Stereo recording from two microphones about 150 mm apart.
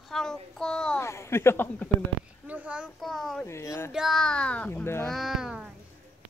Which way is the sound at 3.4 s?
20° left (ahead or behind).